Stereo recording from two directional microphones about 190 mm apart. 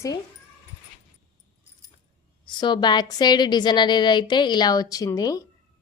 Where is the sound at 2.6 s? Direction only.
25° left (ahead or behind).